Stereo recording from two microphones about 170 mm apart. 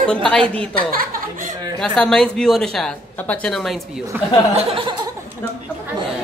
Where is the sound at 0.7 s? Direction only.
60° right (ahead or behind).